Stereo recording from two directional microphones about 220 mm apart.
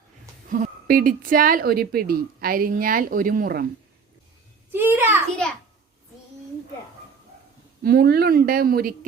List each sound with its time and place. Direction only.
0.5 s a woman's voice: 40° right (ahead or behind)
4.7 s a child's voice: 10° right (ahead or behind)
7.9 s speech: 45° right (ahead or behind)